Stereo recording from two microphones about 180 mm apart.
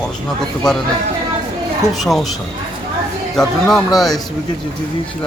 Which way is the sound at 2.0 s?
Centre (ahead or behind).